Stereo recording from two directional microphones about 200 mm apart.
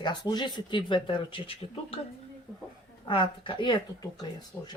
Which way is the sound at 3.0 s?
25° left (ahead or behind).